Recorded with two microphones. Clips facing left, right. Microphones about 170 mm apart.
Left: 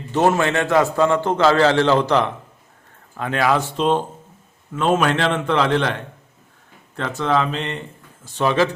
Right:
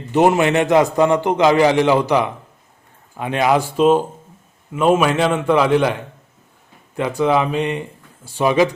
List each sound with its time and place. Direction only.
0.1 s a man's voice: 15° right (ahead or behind)